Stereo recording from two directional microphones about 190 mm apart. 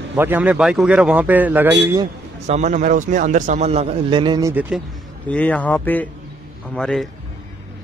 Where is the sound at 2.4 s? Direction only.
40° right (ahead or behind).